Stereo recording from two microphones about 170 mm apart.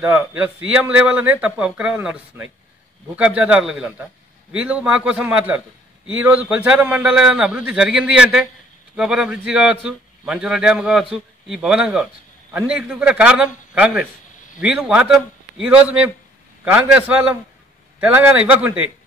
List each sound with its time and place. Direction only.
0.0 s speech: 10° right (ahead or behind)